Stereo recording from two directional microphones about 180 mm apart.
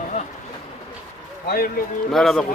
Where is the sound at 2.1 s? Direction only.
Centre (ahead or behind).